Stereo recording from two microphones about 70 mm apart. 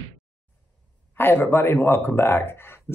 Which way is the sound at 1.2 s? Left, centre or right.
Left.